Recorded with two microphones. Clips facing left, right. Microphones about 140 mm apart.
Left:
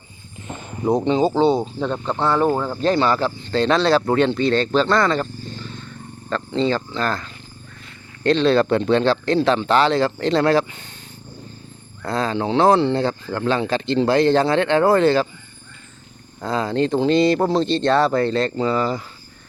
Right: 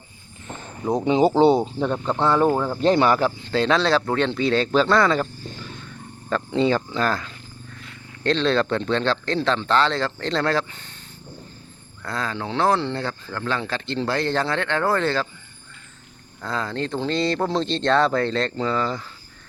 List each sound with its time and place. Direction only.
0.4 s a sound: 15° left (ahead or behind)
1.2 s speech: 25° right (ahead or behind)
1.8 s speech: 5° right (ahead or behind)
2.8 s speech: 15° right (ahead or behind)
8.2 s speech: 5° left (ahead or behind)
12.0 s speech: 25° left (ahead or behind)
16.4 s speech: 15° left (ahead or behind)